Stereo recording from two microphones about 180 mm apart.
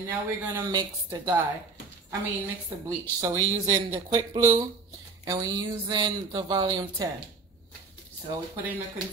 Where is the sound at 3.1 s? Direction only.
15° right (ahead or behind).